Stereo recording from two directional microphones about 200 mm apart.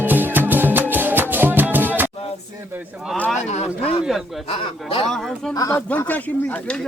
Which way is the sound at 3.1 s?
Centre (ahead or behind).